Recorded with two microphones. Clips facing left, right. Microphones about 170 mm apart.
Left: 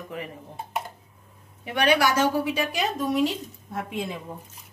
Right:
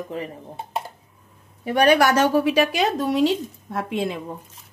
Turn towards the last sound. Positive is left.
turn(degrees=-75)  # may be behind; listen again after turning